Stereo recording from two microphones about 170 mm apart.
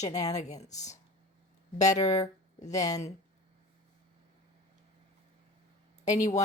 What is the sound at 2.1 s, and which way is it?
Speech, 20° left (ahead or behind).